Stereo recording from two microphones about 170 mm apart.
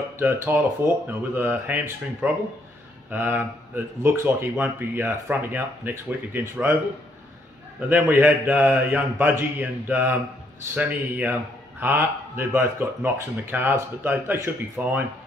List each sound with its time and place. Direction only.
0.2 s speech: 10° right (ahead or behind)
7.9 s speech: 10° right (ahead or behind)